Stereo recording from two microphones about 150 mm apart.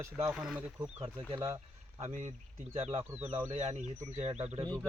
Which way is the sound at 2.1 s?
55° right (ahead or behind).